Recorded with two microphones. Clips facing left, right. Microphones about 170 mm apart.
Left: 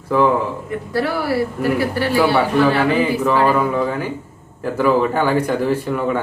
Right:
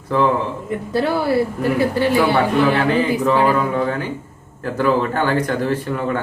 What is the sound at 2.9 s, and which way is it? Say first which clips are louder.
Speech: even; 10° left (ahead or behind).